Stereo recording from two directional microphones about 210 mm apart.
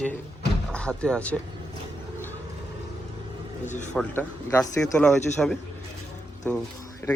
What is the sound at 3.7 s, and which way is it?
Speech, 35° left (ahead or behind).